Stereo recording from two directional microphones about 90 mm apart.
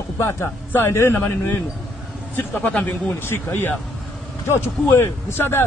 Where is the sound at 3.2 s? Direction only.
25° left (ahead or behind).